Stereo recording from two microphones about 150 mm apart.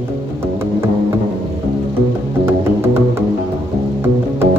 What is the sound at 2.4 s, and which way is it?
Music, 15° right (ahead or behind).